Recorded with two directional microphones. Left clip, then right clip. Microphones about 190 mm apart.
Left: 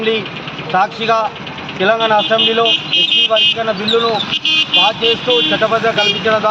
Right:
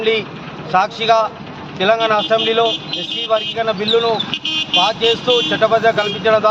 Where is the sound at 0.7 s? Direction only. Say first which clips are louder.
Even; 20° right (ahead or behind).